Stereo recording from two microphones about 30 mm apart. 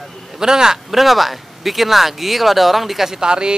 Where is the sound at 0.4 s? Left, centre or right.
Right.